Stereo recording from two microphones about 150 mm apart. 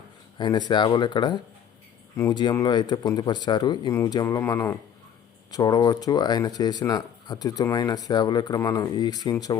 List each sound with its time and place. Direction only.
0.3 s speech: 30° left (ahead or behind)